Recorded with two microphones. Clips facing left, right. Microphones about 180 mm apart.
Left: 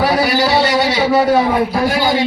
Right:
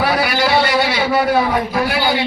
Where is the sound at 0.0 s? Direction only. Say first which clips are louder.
Left 3 dB; 40° left (ahead or behind).